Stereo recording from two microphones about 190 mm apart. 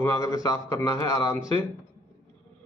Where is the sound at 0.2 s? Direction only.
20° left (ahead or behind).